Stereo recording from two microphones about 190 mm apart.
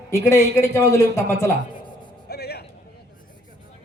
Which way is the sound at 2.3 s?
60° left (ahead or behind).